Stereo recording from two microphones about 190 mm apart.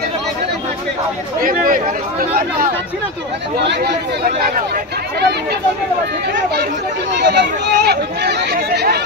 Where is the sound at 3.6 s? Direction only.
65° right (ahead or behind).